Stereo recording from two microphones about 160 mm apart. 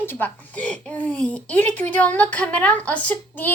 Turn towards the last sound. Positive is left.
turn(degrees=10)  # may be behind; listen again after turning